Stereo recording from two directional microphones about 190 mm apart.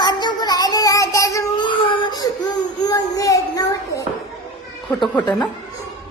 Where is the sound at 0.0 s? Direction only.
20° left (ahead or behind).